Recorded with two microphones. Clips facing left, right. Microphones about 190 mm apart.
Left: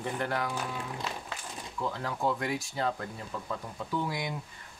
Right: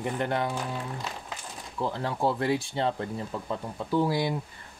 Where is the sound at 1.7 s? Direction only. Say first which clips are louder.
Right 4 dB; 30° right (ahead or behind).